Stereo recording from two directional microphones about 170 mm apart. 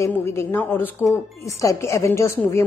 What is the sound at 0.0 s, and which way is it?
A woman's voice, 15° left (ahead or behind).